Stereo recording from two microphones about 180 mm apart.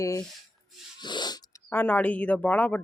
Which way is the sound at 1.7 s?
10° left (ahead or behind).